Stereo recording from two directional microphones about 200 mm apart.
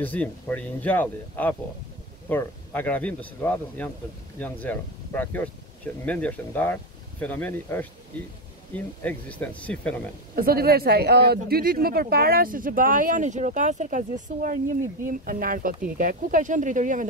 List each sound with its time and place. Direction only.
0.0 s speech: 10° left (ahead or behind)
10.3 s speech: 50° right (ahead or behind)